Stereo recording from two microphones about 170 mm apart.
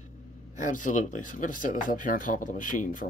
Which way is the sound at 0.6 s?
50° left (ahead or behind).